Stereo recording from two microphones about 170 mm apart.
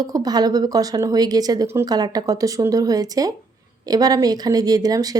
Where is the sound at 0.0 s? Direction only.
20° right (ahead or behind).